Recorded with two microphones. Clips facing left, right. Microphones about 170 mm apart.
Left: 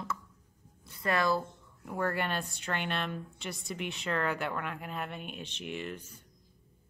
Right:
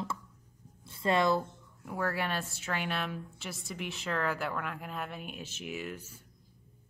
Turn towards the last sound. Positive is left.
turn(degrees=-5)  # may be behind; listen again after turning